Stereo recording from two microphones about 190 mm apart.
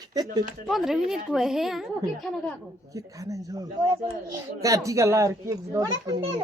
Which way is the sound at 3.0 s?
15° right (ahead or behind).